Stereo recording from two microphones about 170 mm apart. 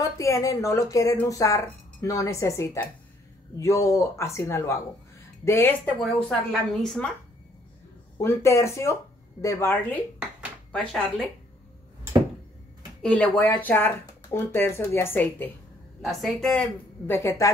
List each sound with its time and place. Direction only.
0.0 s speech: 20° left (ahead or behind); by 7.1 s 5° left (ahead or behind)
8.2 s speech: 15° left (ahead or behind)
10.1 s dishes: 5° right (ahead or behind)
10.7 s a woman's voice: 5° left (ahead or behind)
13.0 s speech: 5° left (ahead or behind)
16.0 s a woman's voice: centre (ahead or behind)